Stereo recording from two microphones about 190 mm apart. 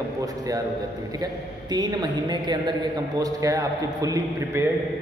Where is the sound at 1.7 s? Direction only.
20° right (ahead or behind).